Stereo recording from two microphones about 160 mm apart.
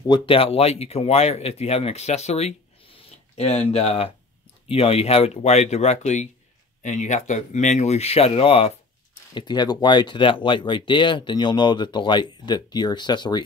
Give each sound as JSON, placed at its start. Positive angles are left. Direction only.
{"t": 0.0, "sound": "speech", "side_deg": 30}
{"t": 9.3, "sound": "speech", "side_deg": 25}